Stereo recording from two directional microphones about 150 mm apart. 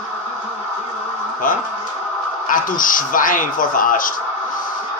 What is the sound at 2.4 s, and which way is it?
Speech, 65° left (ahead or behind).